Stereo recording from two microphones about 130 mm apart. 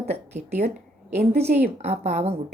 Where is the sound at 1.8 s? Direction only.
60° right (ahead or behind).